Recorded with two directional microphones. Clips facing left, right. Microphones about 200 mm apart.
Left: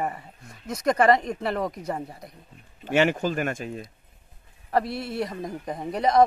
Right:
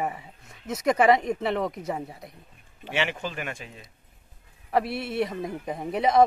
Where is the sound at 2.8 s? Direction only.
45° left (ahead or behind).